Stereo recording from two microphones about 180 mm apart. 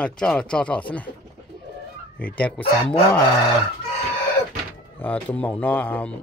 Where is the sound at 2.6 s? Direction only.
30° left (ahead or behind).